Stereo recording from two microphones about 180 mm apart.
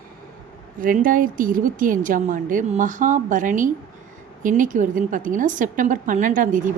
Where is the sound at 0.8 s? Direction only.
50° right (ahead or behind).